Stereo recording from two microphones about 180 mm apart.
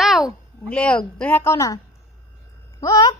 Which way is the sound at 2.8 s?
20° left (ahead or behind).